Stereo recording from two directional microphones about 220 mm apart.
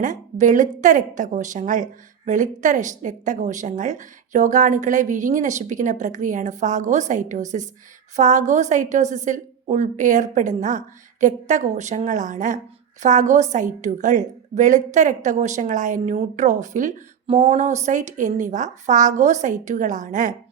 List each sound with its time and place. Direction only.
0.0 s a woman's voice: 35° right (ahead or behind)